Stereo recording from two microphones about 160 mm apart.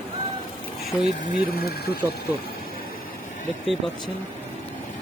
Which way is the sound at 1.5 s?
80° left.